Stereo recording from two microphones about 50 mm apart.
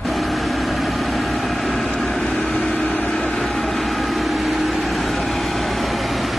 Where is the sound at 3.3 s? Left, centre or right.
Centre.